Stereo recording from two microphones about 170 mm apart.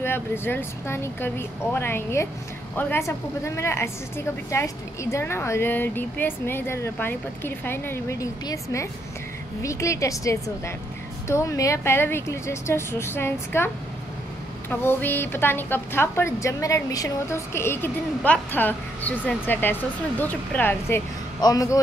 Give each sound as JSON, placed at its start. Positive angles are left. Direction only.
{"t": 0.0, "sound": "a woman's voice", "side_deg": 15}
{"t": 14.7, "sound": "a woman's voice", "side_deg": 10}
{"t": 21.4, "sound": "speech", "side_deg": 20}